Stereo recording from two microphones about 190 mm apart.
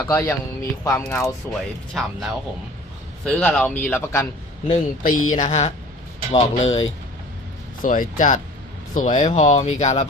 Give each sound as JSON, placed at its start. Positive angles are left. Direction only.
{"t": 0.0, "sound": "speech", "side_deg": 10}
{"t": 1.9, "sound": "speech", "side_deg": 0}
{"t": 4.7, "sound": "speech", "side_deg": 45}
{"t": 7.8, "sound": "speech", "side_deg": 45}